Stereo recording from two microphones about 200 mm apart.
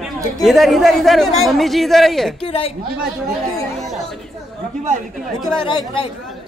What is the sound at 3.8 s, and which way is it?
Chatter, centre (ahead or behind).